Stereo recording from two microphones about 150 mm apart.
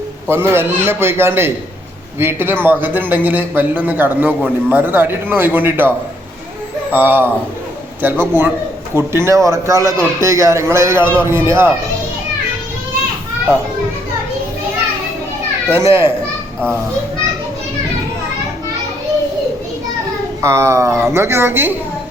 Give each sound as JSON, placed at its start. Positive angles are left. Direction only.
{"t": 0.3, "sound": "a man's voice", "side_deg": -15}
{"t": 6.9, "sound": "a man's voice", "side_deg": -10}
{"t": 15.7, "sound": "a man's voice", "side_deg": -15}
{"t": 20.4, "sound": "speech", "side_deg": -20}